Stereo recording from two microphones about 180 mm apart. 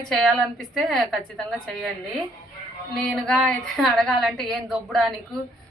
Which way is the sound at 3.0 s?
Centre (ahead or behind).